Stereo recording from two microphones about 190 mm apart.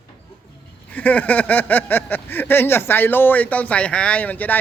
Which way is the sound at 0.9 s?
10° left (ahead or behind).